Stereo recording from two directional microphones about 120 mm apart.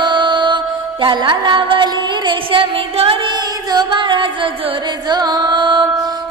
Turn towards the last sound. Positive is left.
turn(degrees=-40)  # may be behind; listen again after turning